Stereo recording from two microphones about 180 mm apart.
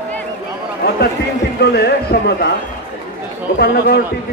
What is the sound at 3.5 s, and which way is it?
Speech, 65° left (ahead or behind).